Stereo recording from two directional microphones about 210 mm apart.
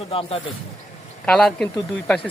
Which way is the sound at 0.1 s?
25° left (ahead or behind).